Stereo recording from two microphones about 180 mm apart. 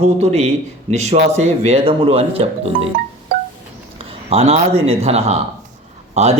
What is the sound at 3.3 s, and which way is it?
Music, 60° right (ahead or behind).